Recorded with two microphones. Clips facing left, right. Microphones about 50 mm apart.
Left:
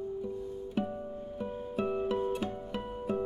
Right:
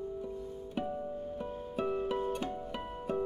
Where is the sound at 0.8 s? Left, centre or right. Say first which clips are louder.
Even; centre.